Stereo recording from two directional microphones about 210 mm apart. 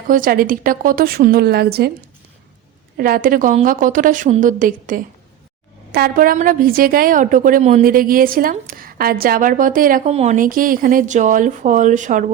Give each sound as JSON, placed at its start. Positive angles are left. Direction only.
{"t": 0.1, "sound": "a woman's voice", "side_deg": -40}
{"t": 3.0, "sound": "a woman's voice", "side_deg": -40}